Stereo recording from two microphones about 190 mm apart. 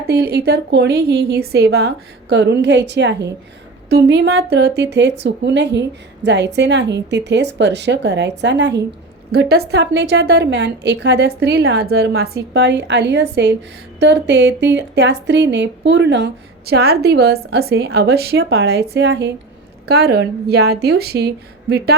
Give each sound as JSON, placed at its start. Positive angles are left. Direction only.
{"t": 0.1, "sound": "speech", "side_deg": -55}